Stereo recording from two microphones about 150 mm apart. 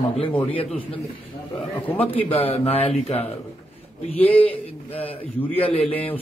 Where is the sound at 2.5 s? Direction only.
40° left (ahead or behind).